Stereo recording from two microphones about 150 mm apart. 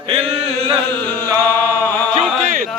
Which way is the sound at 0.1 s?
40° right (ahead or behind).